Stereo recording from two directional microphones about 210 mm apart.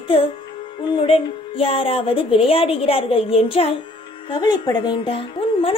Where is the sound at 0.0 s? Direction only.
25° left (ahead or behind).